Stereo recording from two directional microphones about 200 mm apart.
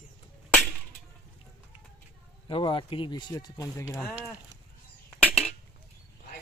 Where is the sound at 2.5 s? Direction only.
25° left (ahead or behind).